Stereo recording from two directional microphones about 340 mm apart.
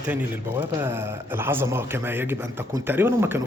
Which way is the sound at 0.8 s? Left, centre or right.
Centre.